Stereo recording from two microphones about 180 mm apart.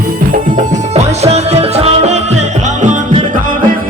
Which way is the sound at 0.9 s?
35° right (ahead or behind).